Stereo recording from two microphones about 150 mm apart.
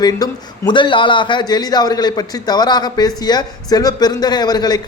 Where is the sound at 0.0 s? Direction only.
25° left (ahead or behind).